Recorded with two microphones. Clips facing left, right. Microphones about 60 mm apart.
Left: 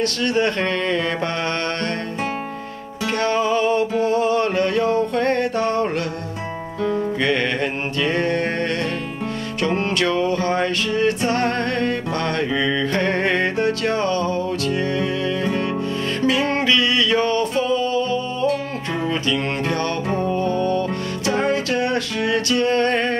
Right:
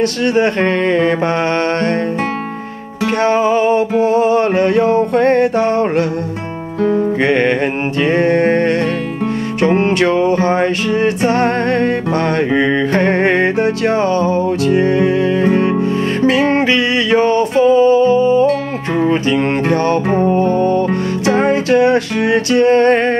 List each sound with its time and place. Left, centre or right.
0.0 s music: right
3.2 s music: right